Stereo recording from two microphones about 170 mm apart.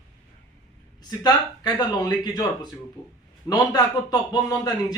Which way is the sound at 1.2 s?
25° left (ahead or behind).